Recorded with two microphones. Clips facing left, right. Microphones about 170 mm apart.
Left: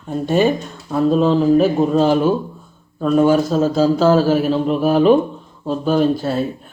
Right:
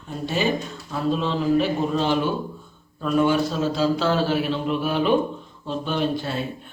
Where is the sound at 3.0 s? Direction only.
40° left (ahead or behind).